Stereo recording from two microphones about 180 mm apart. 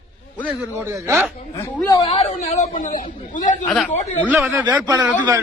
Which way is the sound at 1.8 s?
20° left (ahead or behind).